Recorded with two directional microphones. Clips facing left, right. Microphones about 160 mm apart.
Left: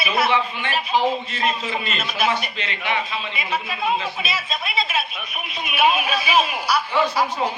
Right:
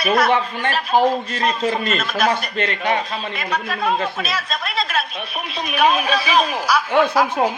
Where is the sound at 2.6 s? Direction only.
45° right (ahead or behind).